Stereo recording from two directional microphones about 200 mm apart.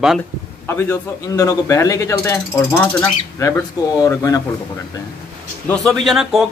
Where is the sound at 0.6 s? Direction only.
10° left (ahead or behind).